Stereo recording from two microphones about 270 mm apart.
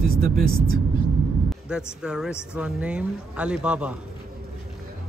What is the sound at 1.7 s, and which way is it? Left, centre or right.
Speech, centre.